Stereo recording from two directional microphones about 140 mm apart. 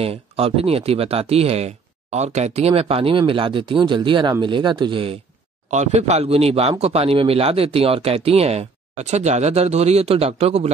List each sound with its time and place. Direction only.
0.0 s speech: 45° right (ahead or behind)
5.7 s speech: 55° right (ahead or behind)